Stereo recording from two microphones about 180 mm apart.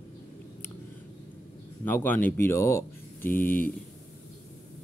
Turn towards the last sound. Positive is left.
turn(degrees=50)  # may be behind; listen again after turning